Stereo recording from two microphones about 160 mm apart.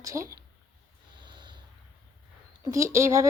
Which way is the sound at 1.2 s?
30° right (ahead or behind).